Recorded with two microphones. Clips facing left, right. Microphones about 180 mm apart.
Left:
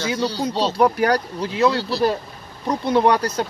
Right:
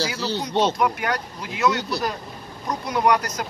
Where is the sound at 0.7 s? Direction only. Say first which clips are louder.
Left 6 dB; 35° left (ahead or behind).